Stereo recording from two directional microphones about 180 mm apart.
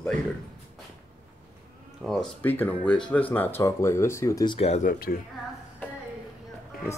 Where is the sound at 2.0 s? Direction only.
Centre (ahead or behind); by 4.6 s 20° left (ahead or behind).